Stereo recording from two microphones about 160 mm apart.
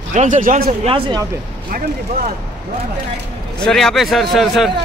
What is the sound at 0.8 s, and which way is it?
Speech, 35° right (ahead or behind).